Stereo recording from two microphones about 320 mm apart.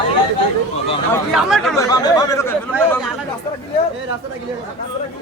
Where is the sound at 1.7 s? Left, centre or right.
Centre.